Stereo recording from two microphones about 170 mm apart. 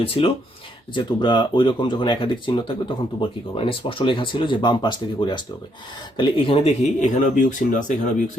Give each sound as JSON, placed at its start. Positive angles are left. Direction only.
{"t": 0.0, "sound": "speech", "side_deg": 35}